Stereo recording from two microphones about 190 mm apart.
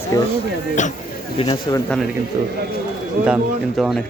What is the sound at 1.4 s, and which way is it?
Speech, 20° left (ahead or behind).